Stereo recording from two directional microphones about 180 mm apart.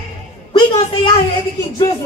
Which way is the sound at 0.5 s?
30° left (ahead or behind).